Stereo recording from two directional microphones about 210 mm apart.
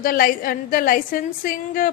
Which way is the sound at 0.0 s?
40° left (ahead or behind).